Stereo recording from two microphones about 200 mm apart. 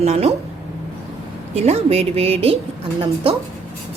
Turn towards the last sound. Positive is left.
turn(degrees=-25)  # may be behind; listen again after turning